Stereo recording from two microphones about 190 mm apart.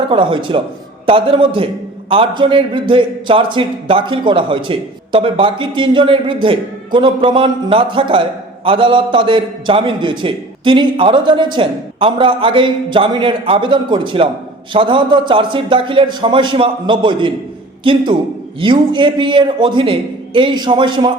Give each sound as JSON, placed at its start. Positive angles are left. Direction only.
{"t": 0.1, "sound": "a man's voice", "side_deg": -25}